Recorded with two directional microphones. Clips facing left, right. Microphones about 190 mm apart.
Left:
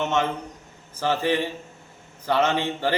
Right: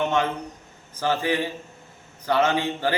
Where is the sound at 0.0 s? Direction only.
5° left (ahead or behind).